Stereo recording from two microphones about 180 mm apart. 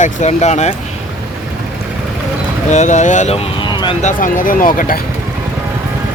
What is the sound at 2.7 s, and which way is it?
Speech, 40° left (ahead or behind).